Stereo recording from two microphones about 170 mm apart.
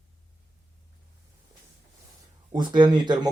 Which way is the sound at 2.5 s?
25° right (ahead or behind).